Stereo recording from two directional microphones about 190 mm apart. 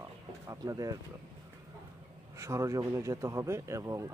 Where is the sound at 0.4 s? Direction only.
20° right (ahead or behind).